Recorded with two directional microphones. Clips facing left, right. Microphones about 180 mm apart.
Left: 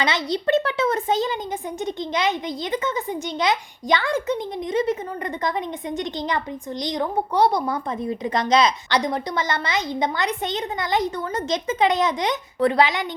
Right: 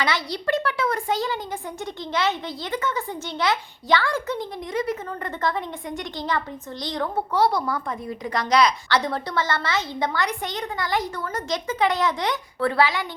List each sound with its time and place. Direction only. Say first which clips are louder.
0.0 s a woman's voice: left 3 dB; 20° left (ahead or behind)